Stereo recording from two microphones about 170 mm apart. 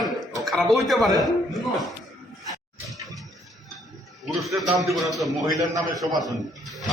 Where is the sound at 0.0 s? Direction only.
Centre (ahead or behind).